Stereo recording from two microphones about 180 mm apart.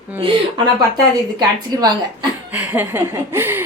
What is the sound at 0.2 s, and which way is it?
Speech, 25° right (ahead or behind).